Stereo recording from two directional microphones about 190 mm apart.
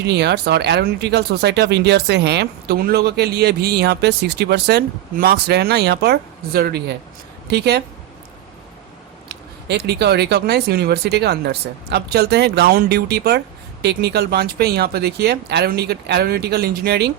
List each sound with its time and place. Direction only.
0.0 s speech: 60° right (ahead or behind)
9.3 s speech: 60° right (ahead or behind)